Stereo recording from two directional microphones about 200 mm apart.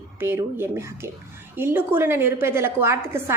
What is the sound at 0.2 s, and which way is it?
A woman's voice, 10° right (ahead or behind).